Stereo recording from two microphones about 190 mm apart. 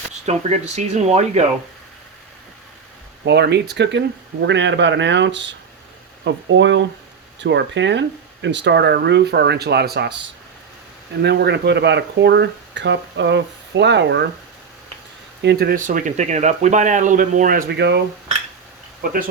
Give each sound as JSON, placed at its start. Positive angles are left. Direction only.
{"t": 0.3, "sound": "speech", "side_deg": -40}
{"t": 3.2, "sound": "speech", "side_deg": -60}
{"t": 11.2, "sound": "speech", "side_deg": -60}
{"t": 15.4, "sound": "speech", "side_deg": -60}